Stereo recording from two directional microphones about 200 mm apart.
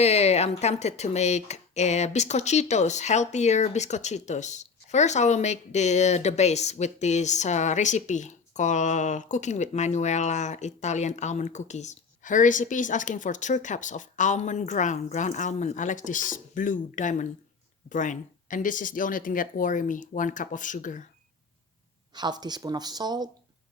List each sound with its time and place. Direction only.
0.0 s speech: 30° left (ahead or behind)
22.1 s speech: 20° right (ahead or behind)